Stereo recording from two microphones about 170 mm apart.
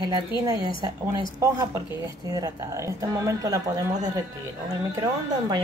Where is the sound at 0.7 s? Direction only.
25° right (ahead or behind).